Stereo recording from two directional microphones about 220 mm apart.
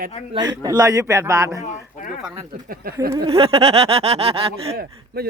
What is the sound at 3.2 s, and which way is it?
Speech, 25° right (ahead or behind).